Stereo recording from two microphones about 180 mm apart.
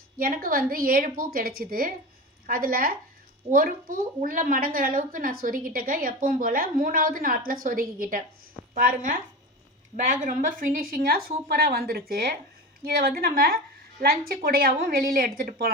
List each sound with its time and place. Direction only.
0.2 s a woman's voice: 55° right (ahead or behind)